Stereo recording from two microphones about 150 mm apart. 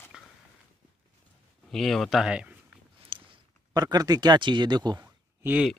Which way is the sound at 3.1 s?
25° right (ahead or behind).